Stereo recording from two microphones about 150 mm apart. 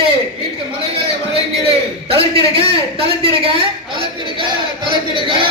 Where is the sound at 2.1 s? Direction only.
40° right (ahead or behind).